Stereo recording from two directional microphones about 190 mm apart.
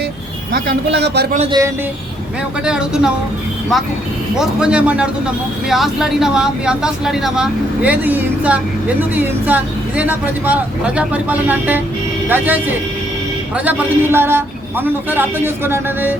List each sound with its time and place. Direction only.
0.5 s a man's voice: 60° right (ahead or behind)
1.5 s a man's voice: 20° right (ahead or behind)
2.6 s speech: 5° right (ahead or behind)
4.4 s speech: 5° right (ahead or behind)